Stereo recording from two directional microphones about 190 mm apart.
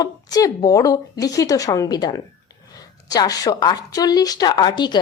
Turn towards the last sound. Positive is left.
turn(degrees=20)  # may be behind; listen again after turning